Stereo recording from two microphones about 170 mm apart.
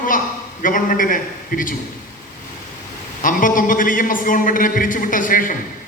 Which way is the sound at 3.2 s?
50° left (ahead or behind).